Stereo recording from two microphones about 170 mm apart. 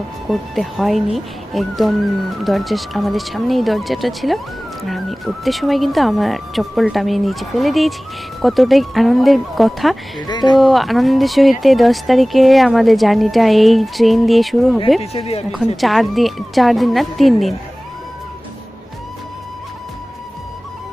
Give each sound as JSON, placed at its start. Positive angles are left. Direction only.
{"t": 0.3, "sound": "speech", "side_deg": 0}
{"t": 10.2, "sound": "speech", "side_deg": 25}
{"t": 10.6, "sound": "speech", "side_deg": 0}
{"t": 15.1, "sound": "speech", "side_deg": 35}
{"t": 15.5, "sound": "speech", "side_deg": 0}